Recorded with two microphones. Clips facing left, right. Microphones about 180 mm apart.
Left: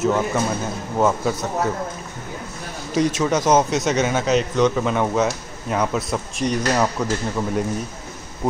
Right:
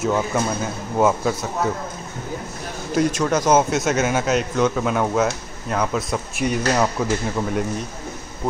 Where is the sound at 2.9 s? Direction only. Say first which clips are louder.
Even; centre (ahead or behind).